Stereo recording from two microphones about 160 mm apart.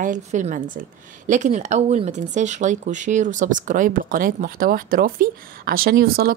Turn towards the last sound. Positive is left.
turn(degrees=-75)  # may be behind; listen again after turning